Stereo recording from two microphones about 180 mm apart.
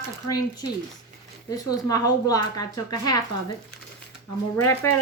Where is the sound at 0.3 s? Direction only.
20° left (ahead or behind).